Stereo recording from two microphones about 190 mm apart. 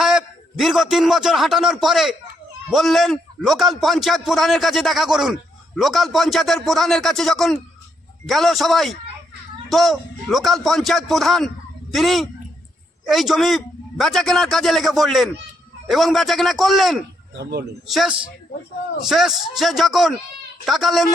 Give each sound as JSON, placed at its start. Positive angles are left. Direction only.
{"t": 0.0, "sound": "a man's voice", "side_deg": 0}
{"t": 17.3, "sound": "a man's voice", "side_deg": -60}
{"t": 17.8, "sound": "a man's voice", "side_deg": 0}